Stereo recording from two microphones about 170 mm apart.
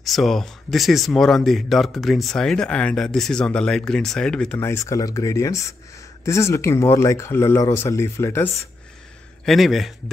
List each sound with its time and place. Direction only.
0.0 s speech: centre (ahead or behind)
9.4 s speech: centre (ahead or behind)